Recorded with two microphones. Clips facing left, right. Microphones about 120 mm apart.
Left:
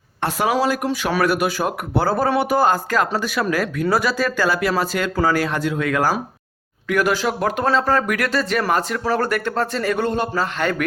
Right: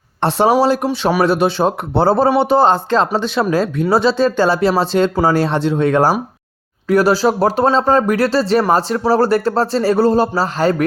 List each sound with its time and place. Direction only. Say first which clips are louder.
0.2 s speech: right 6 dB; 30° right (ahead or behind)